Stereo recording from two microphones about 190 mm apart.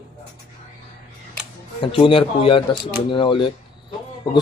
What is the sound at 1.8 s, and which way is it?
A man's voice, 30° left (ahead or behind).